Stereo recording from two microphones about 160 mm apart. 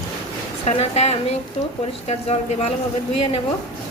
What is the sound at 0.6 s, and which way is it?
Speech, 40° left (ahead or behind).